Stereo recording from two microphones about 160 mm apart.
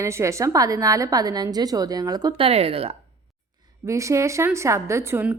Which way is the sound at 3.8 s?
20° right (ahead or behind).